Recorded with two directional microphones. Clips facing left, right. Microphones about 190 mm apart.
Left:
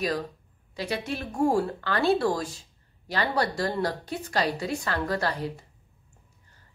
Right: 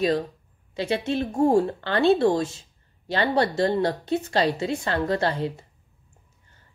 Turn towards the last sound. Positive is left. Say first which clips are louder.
# right 4 dB
turn(degrees=-25)  # may be behind; listen again after turning